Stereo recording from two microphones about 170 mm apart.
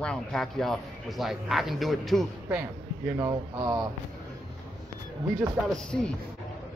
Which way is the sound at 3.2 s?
20° right (ahead or behind).